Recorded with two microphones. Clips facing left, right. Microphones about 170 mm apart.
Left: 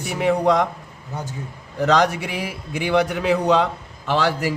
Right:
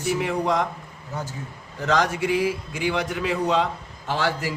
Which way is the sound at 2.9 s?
65° left (ahead or behind).